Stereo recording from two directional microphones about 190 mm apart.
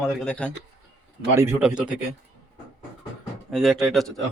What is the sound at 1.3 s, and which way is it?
Speech, 10° right (ahead or behind).